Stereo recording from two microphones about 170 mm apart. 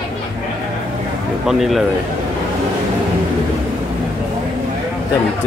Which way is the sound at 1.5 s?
Centre (ahead or behind).